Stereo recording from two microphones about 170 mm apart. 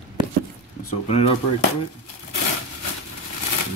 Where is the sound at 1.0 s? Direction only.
35° left (ahead or behind).